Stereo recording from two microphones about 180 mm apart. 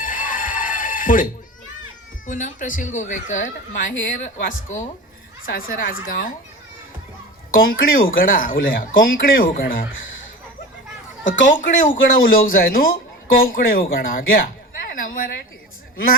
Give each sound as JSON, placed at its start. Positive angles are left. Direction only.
{"t": 0.0, "sound": "a sound", "side_deg": 45}
{"t": 2.2, "sound": "speech", "side_deg": 45}
{"t": 7.5, "sound": "speech", "side_deg": 55}
{"t": 11.4, "sound": "a woman's voice", "side_deg": 45}